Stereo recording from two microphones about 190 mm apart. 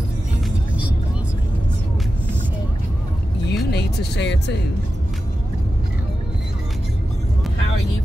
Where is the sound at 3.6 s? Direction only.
60° left (ahead or behind).